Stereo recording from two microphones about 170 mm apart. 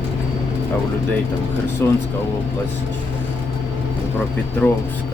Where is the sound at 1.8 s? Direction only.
15° left (ahead or behind).